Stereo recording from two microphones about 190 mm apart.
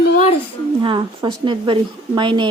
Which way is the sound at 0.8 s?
25° right (ahead or behind).